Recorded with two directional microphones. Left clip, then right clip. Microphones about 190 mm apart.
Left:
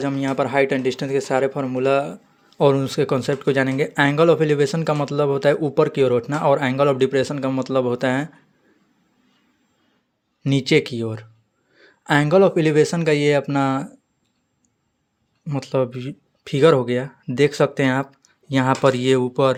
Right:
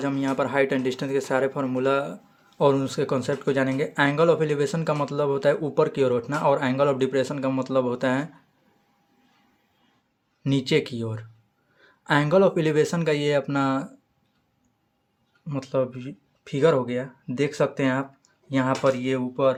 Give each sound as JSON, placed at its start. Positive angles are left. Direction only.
{"t": 0.0, "sound": "speech", "side_deg": 25}
{"t": 10.4, "sound": "speech", "side_deg": 30}
{"t": 15.4, "sound": "speech", "side_deg": 35}